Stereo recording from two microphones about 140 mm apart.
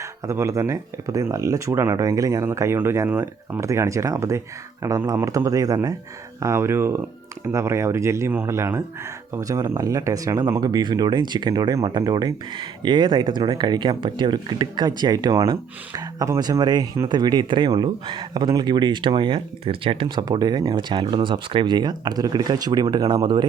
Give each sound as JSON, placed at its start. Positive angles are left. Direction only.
{"t": 0.0, "sound": "speech", "side_deg": -20}